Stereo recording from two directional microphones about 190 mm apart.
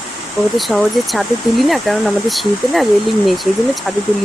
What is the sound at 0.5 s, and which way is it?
Speech, centre (ahead or behind).